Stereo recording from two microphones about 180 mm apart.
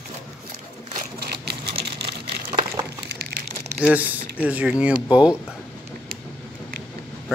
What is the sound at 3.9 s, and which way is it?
Speech, 10° right (ahead or behind).